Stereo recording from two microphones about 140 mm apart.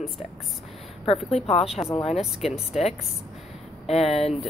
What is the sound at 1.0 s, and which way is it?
Speech, 45° left (ahead or behind).